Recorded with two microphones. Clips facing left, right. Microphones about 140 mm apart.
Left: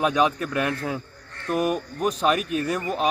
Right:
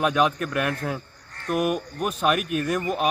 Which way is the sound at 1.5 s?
10° right (ahead or behind).